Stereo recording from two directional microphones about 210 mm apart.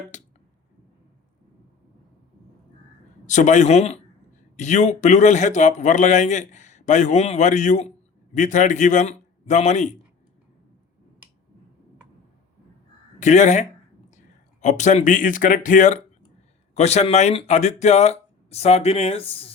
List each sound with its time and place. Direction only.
0.1 s speech: 35° left (ahead or behind)
3.2 s a man's voice: 35° left (ahead or behind)
13.1 s a man's voice: 35° left (ahead or behind)